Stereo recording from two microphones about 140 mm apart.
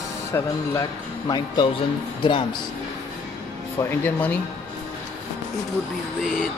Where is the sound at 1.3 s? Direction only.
30° left (ahead or behind).